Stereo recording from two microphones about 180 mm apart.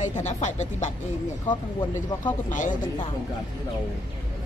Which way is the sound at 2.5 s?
45° left (ahead or behind).